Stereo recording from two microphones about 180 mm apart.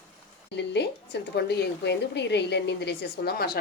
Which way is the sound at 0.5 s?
70° left (ahead or behind).